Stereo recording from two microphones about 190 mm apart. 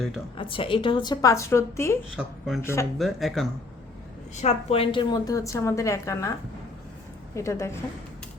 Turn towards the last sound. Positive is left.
turn(degrees=15)  # may be behind; listen again after turning